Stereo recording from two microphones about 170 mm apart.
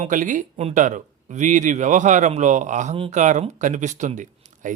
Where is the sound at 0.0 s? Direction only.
50° right (ahead or behind).